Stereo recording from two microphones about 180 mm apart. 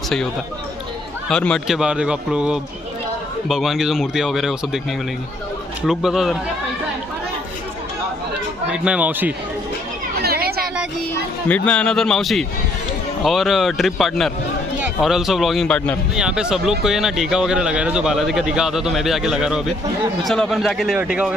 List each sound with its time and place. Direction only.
1.3 s speech: 5° left (ahead or behind)
5.9 s speech: centre (ahead or behind)
8.6 s speech: 5° right (ahead or behind)
10.2 s a sound: 55° right (ahead or behind)
11.4 s speech: 10° left (ahead or behind)